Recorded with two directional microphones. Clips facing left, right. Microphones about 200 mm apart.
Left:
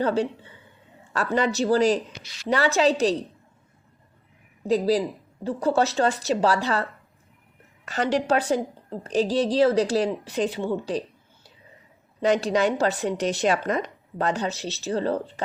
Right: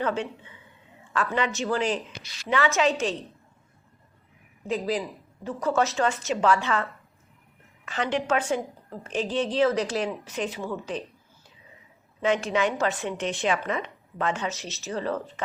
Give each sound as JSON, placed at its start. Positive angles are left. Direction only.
{"t": 0.0, "sound": "a woman's voice", "side_deg": 35}
{"t": 4.6, "sound": "a woman's voice", "side_deg": 35}
{"t": 7.9, "sound": "a woman's voice", "side_deg": 40}
{"t": 12.2, "sound": "a woman's voice", "side_deg": 35}